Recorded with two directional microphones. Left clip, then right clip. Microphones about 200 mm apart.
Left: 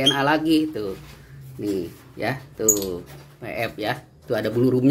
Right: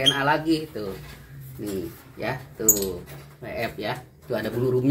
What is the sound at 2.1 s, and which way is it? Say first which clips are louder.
Speech: left 3 dB; 55° left (ahead or behind).